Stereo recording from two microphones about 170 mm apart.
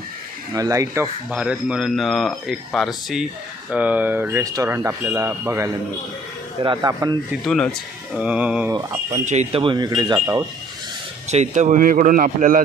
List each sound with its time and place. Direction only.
0.6 s speech: 20° right (ahead or behind)
1.3 s speech: 5° right (ahead or behind); by 7.2 s 20° right (ahead or behind)
7.4 s speech: centre (ahead or behind)
8.7 s speech: 20° right (ahead or behind)
9.2 s speech: 40° right (ahead or behind); by 10.1 s 25° right (ahead or behind)
11.2 s speech: 45° right (ahead or behind)